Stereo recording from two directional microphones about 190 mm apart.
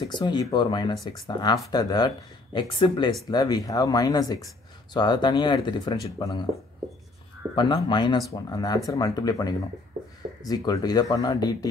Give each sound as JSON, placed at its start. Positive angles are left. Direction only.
{"t": 0.0, "sound": "speech", "side_deg": 20}
{"t": 7.5, "sound": "speech", "side_deg": 25}